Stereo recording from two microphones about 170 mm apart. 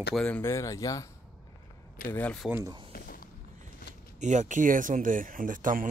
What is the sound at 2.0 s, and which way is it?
Speech, 10° left (ahead or behind).